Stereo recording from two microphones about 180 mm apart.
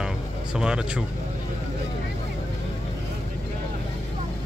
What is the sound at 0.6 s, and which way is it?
Speech, 5° right (ahead or behind).